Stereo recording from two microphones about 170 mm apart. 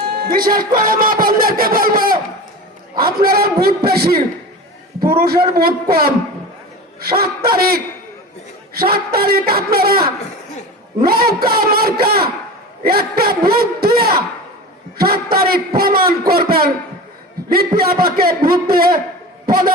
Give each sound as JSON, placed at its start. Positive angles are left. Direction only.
{"t": 0.2, "sound": "a man's voice", "side_deg": -60}
{"t": 17.7, "sound": "a man's voice", "side_deg": -60}